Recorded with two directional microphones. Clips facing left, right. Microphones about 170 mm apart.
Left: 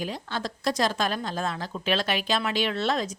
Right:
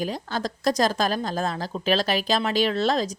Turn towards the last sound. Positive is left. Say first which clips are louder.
# right 4 dB
turn(degrees=-35)  # may be behind; listen again after turning